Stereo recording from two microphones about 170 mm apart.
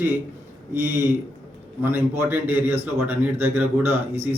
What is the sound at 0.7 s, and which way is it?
A man's voice, 15° right (ahead or behind).